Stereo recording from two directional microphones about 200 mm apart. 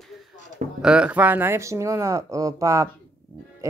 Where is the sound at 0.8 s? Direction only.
5° right (ahead or behind).